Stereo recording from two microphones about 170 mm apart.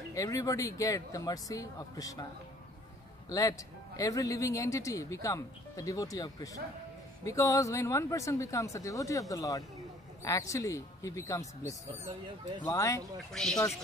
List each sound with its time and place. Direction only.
0.1 s speech: 20° left (ahead or behind)
3.3 s speech: 20° left (ahead or behind)
13.3 s speech: 5° left (ahead or behind)